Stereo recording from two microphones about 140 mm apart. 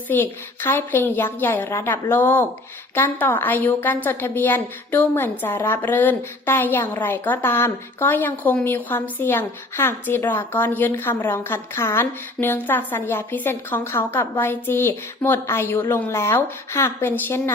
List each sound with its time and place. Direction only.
0.1 s a woman's voice: 15° left (ahead or behind)